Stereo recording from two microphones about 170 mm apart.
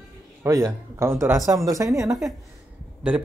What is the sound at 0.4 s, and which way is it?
Speech, 20° right (ahead or behind).